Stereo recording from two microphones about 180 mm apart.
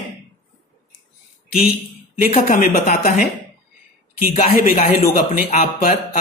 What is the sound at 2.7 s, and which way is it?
Speech, 45° left (ahead or behind).